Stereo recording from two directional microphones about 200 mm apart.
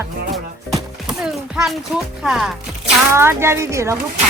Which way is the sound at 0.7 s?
5° right (ahead or behind).